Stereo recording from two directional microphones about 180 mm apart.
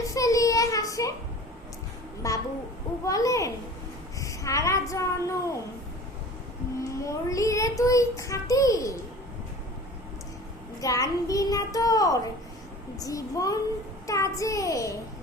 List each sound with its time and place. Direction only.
0.1 s child singing: 20° left (ahead or behind)
2.2 s a child's voice: 20° left (ahead or behind)
7.0 s a child's voice: 15° left (ahead or behind)
10.8 s a child's voice: 20° left (ahead or behind)